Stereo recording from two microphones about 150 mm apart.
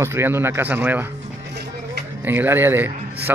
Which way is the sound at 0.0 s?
15° right (ahead or behind).